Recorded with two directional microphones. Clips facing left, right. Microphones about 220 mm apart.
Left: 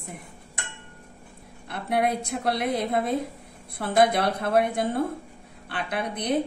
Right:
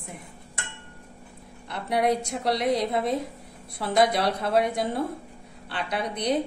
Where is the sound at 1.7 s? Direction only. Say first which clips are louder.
Right 1 dB; 55° left (ahead or behind).